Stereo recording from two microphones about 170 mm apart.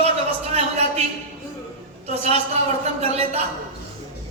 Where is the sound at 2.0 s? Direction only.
40° right (ahead or behind).